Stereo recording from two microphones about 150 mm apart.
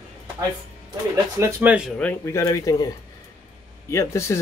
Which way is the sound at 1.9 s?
15° left (ahead or behind).